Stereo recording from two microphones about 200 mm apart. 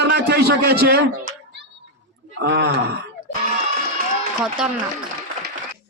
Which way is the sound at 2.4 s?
60° right (ahead or behind).